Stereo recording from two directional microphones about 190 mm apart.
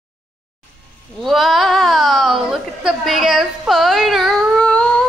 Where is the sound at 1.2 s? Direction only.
Centre (ahead or behind).